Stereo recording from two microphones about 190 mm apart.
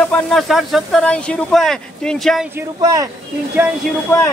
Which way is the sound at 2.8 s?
15° right (ahead or behind).